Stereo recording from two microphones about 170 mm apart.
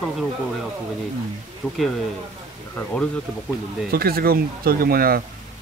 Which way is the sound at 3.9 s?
60° right (ahead or behind).